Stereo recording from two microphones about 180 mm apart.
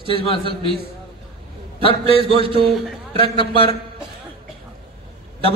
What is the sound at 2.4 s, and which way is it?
Speech, 30° right (ahead or behind).